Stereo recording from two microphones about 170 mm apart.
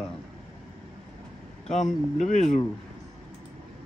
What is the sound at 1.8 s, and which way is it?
Speech, 45° left (ahead or behind).